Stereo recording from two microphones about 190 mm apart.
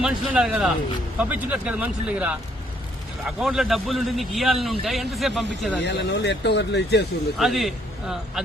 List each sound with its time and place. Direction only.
0.0 s a man's voice: 5° right (ahead or behind)
5.8 s speech: 65° left (ahead or behind)
7.3 s a man's voice: centre (ahead or behind)